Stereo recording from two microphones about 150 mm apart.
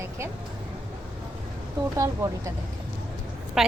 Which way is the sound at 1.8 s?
20° right (ahead or behind).